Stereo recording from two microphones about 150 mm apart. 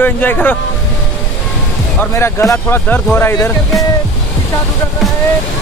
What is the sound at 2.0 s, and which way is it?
Speech, 15° left (ahead or behind).